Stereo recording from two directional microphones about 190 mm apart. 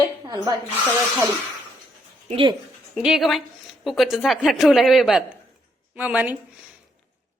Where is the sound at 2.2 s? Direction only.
30° right (ahead or behind).